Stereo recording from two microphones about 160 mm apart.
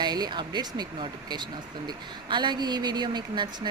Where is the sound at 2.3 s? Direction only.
25° right (ahead or behind).